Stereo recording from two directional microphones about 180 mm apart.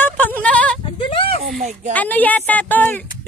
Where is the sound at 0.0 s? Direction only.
10° left (ahead or behind).